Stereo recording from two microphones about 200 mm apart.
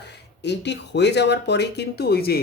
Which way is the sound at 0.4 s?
60° left (ahead or behind).